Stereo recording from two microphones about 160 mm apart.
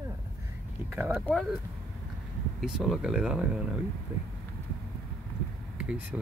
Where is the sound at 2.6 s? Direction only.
5° right (ahead or behind).